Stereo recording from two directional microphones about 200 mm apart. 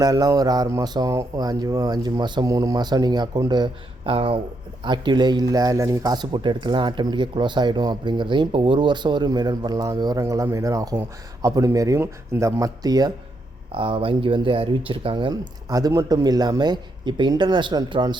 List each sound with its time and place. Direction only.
0.0 s speech: 20° right (ahead or behind)